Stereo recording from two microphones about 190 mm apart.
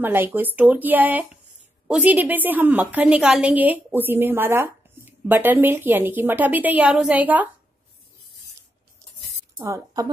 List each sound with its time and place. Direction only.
0.0 s a woman's voice: 10° right (ahead or behind)
9.6 s a woman's voice: 15° right (ahead or behind)